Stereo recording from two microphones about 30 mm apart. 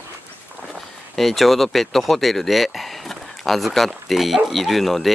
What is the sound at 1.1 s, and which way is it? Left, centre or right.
Speech, centre.